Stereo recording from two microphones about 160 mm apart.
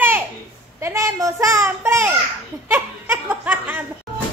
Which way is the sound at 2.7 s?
10° right (ahead or behind).